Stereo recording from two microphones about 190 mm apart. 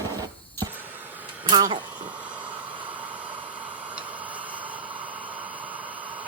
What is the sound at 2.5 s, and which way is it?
Vehicle, 25° right (ahead or behind).